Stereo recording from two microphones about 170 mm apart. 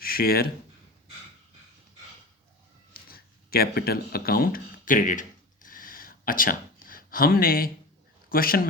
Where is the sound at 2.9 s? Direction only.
65° left (ahead or behind).